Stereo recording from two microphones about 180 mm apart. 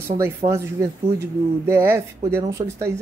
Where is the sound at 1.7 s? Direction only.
15° right (ahead or behind).